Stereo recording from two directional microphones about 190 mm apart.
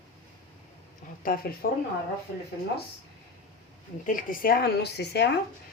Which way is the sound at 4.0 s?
45° left (ahead or behind).